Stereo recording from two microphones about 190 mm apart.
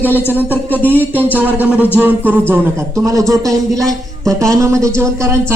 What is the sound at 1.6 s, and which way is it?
Speech, 5° right (ahead or behind).